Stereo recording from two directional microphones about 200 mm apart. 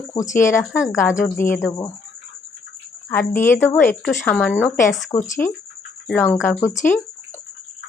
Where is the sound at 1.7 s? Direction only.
15° left (ahead or behind).